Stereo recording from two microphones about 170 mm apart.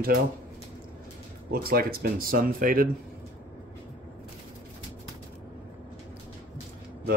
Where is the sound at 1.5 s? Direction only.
65° right (ahead or behind).